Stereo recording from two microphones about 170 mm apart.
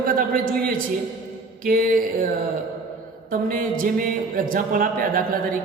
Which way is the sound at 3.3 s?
55° right (ahead or behind).